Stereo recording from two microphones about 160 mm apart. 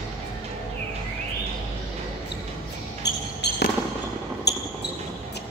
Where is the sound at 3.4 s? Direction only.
90° left.